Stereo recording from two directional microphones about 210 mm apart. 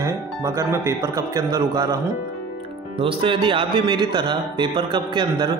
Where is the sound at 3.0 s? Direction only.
25° right (ahead or behind).